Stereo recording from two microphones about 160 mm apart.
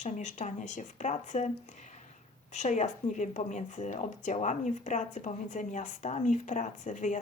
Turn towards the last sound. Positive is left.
turn(degrees=50)  # may be behind; listen again after turning